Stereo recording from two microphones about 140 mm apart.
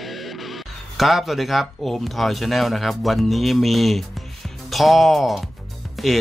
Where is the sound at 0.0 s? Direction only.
Centre (ahead or behind).